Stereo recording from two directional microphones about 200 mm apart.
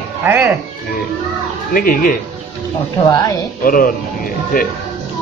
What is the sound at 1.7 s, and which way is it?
Speech, 45° left (ahead or behind).